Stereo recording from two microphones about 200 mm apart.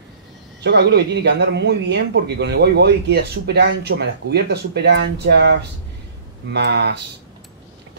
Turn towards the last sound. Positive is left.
turn(degrees=-60)  # may be behind; listen again after turning